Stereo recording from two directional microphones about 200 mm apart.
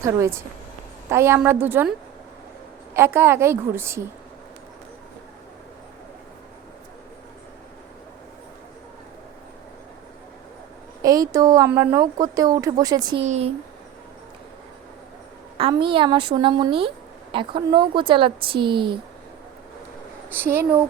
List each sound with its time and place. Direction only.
0.0 s a woman's voice: 15° right (ahead or behind)
11.0 s a woman's voice: 20° right (ahead or behind)
13.2 s speech: 35° right (ahead or behind)
15.5 s speech: 25° right (ahead or behind)
20.3 s a woman's voice: 10° right (ahead or behind)